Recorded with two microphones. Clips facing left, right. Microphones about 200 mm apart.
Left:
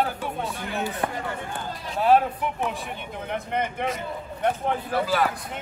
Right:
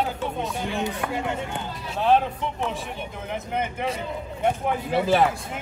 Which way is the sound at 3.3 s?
5° right (ahead or behind).